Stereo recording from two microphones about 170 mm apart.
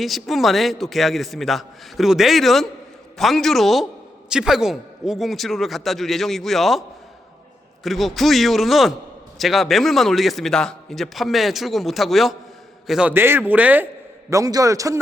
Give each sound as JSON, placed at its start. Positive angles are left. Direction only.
{"t": 0.0, "sound": "a man's voice", "side_deg": 0}
{"t": 7.9, "sound": "a man's voice", "side_deg": 0}